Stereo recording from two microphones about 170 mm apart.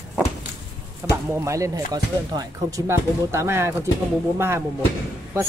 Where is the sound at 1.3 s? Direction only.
15° right (ahead or behind).